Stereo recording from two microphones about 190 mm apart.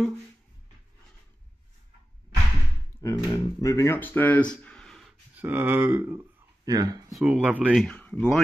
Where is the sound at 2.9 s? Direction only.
30° left (ahead or behind).